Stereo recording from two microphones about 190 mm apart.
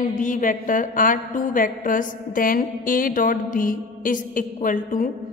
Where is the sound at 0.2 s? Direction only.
45° left (ahead or behind).